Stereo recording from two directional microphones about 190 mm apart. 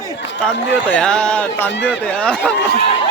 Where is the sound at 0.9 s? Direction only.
5° left (ahead or behind).